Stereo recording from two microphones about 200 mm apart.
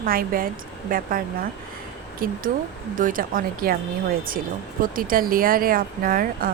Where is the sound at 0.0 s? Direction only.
45° right (ahead or behind).